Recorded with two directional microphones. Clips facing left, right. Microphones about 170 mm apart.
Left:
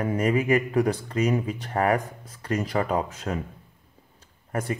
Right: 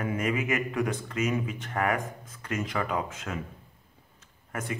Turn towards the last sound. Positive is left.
turn(degrees=35)  # may be behind; listen again after turning